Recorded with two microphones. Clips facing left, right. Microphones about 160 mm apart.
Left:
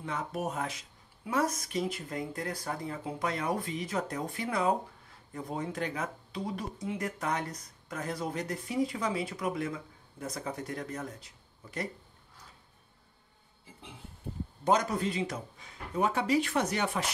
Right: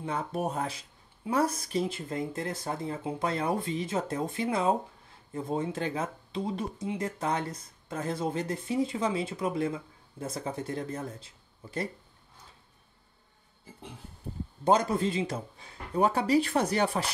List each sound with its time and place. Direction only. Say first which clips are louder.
0.0 s speech: right 3 dB; 30° right (ahead or behind)
14.6 s speech: right 3 dB; 30° right (ahead or behind)